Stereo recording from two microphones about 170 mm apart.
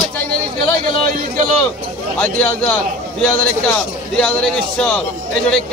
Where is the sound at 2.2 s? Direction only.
5° left (ahead or behind).